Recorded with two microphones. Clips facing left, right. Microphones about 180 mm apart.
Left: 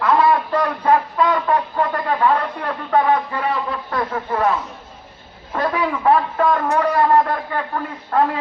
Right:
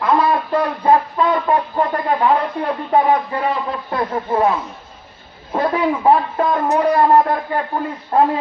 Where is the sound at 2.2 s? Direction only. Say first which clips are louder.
Right 1 dB; 15° right (ahead or behind).